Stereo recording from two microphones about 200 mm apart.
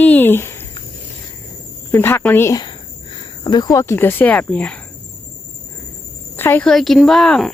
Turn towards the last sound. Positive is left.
turn(degrees=5)  # may be behind; listen again after turning